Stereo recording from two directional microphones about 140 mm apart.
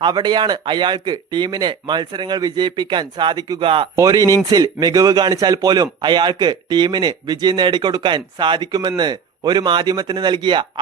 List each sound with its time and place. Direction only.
0.0 s speech: 30° right (ahead or behind)
3.9 s speech: 25° right (ahead or behind)